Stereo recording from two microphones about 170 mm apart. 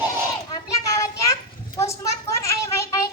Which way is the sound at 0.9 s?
20° left (ahead or behind).